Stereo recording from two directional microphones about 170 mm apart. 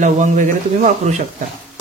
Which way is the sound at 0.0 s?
50° right (ahead or behind).